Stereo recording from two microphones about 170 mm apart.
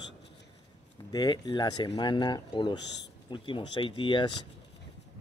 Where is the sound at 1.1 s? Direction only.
25° left (ahead or behind).